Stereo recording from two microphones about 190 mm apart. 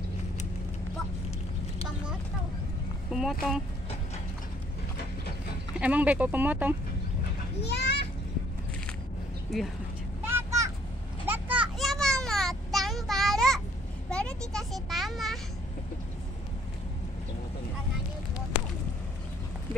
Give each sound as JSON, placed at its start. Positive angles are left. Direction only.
{"t": 3.1, "sound": "speech", "side_deg": 0}
{"t": 5.8, "sound": "speech", "side_deg": -10}
{"t": 7.6, "sound": "children playing", "side_deg": 60}
{"t": 9.5, "sound": "speech", "side_deg": 0}
{"t": 10.2, "sound": "vehicle", "side_deg": -15}
{"t": 11.2, "sound": "a sound", "side_deg": -10}